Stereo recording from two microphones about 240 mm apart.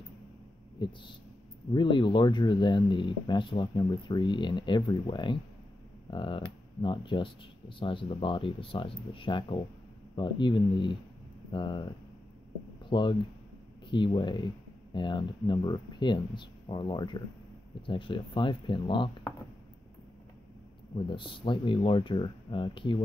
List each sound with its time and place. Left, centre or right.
0.8 s speech: centre
12.9 s speech: left
21.1 s speech: left